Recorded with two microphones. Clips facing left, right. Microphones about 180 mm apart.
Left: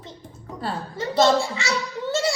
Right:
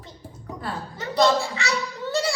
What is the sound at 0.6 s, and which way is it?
Chuckle, 25° left (ahead or behind).